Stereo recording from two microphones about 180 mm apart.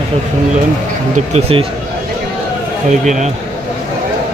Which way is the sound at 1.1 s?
35° right (ahead or behind).